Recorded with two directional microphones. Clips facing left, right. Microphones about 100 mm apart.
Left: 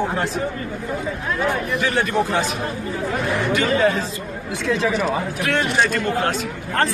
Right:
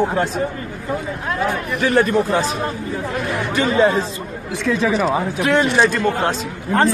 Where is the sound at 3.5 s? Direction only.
30° right (ahead or behind).